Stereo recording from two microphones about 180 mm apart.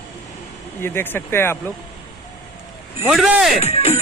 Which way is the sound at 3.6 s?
35° left (ahead or behind).